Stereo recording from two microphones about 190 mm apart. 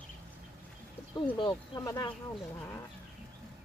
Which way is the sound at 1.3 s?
20° left (ahead or behind).